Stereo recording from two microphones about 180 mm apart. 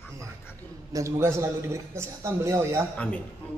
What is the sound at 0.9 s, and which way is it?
A man's voice, 15° right (ahead or behind).